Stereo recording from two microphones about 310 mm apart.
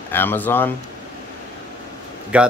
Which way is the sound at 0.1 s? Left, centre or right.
Centre.